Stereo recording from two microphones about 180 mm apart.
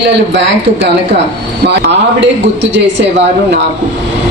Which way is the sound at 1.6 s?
75° right (ahead or behind).